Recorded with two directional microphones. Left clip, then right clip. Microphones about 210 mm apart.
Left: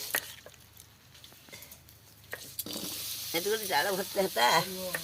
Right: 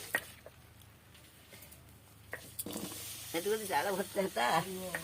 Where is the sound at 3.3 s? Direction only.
35° left (ahead or behind).